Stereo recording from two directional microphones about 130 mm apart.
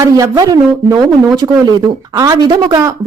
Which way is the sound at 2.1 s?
30° right (ahead or behind).